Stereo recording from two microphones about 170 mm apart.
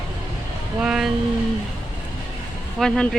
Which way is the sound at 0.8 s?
5° right (ahead or behind).